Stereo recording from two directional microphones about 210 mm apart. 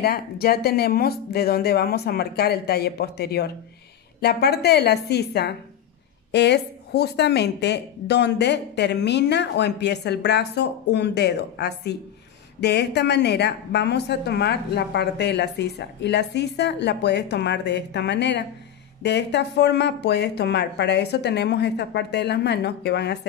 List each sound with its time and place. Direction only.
0.0 s a woman's voice: 50° left (ahead or behind)